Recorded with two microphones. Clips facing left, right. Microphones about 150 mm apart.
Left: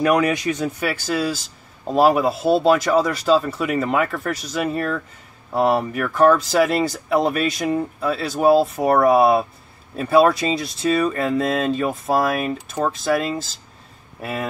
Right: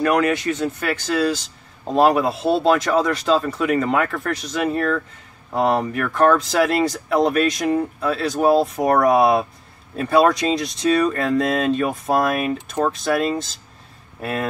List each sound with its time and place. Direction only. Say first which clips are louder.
0.0 s speech: even; 15° left (ahead or behind)